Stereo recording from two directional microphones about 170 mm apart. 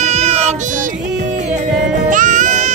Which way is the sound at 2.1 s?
50° right (ahead or behind).